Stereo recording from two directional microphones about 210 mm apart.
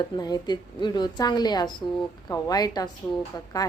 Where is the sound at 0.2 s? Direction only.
20° left (ahead or behind).